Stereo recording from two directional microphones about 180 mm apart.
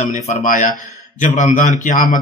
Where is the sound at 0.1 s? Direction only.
45° left (ahead or behind).